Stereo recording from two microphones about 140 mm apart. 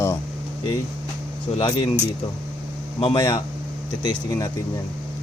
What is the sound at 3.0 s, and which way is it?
Speech, 30° left (ahead or behind).